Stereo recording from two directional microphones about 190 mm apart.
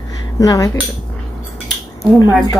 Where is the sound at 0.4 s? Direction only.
15° left (ahead or behind).